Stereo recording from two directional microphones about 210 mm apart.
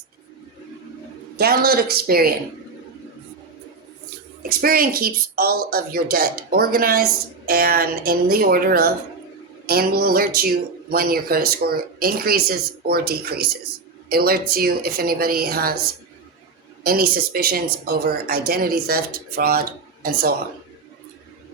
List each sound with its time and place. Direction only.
1.4 s a woman's voice: 45° right (ahead or behind)
4.4 s a woman's voice: 45° right (ahead or behind)
16.8 s a woman's voice: 45° right (ahead or behind)